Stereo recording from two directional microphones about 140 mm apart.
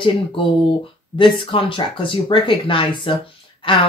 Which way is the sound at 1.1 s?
40° left (ahead or behind).